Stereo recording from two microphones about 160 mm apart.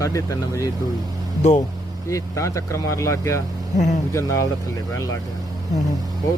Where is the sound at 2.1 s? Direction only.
20° left (ahead or behind).